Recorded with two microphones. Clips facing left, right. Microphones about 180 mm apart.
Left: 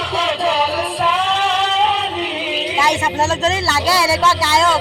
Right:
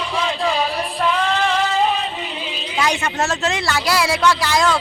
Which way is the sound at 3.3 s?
35° left (ahead or behind).